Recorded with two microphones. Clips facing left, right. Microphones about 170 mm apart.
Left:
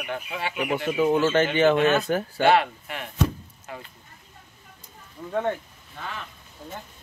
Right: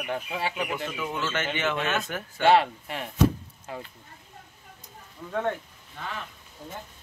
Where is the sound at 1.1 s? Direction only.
40° left (ahead or behind).